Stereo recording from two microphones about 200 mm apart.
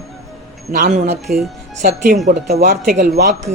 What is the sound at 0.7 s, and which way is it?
A man's voice, 40° right (ahead or behind).